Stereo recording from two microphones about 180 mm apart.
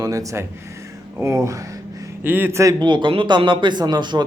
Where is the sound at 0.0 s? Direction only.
20° right (ahead or behind).